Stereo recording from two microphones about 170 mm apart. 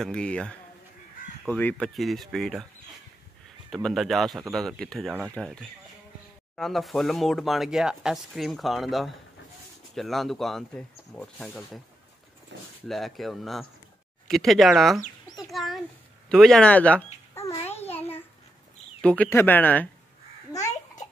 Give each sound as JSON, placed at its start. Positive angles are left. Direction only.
{"t": 0.0, "sound": "speech", "side_deg": 5}
{"t": 3.7, "sound": "speech", "side_deg": 0}
{"t": 12.5, "sound": "speech", "side_deg": -90}
{"t": 12.8, "sound": "speech", "side_deg": 0}
{"t": 15.3, "sound": "a sound", "side_deg": 0}
{"t": 16.3, "sound": "babbling", "side_deg": 0}
{"t": 18.9, "sound": "speech", "side_deg": 5}